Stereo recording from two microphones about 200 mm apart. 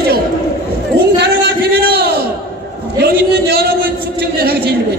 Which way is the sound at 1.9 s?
50° right (ahead or behind).